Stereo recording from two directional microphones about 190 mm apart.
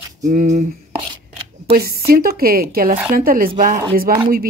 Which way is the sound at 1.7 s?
55° right (ahead or behind).